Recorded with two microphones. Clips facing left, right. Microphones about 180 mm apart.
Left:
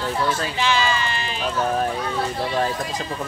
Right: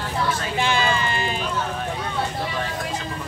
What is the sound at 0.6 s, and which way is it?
Speech, 55° right (ahead or behind).